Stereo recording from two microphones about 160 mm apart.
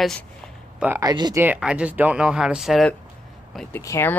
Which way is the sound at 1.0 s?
25° right (ahead or behind).